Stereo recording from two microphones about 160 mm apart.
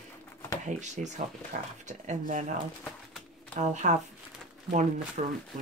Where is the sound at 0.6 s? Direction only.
50° right (ahead or behind).